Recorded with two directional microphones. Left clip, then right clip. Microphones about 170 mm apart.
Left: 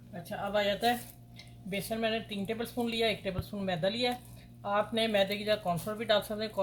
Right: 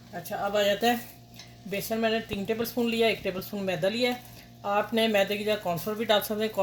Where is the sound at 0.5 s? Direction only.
60° right (ahead or behind).